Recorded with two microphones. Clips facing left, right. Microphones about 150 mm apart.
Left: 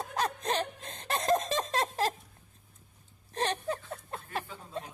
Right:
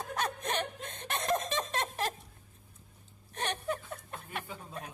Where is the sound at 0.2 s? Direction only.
30° left (ahead or behind).